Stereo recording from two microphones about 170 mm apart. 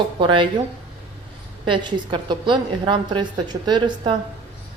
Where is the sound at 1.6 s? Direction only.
30° right (ahead or behind).